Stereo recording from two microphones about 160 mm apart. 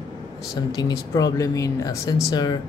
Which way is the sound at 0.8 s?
25° left (ahead or behind).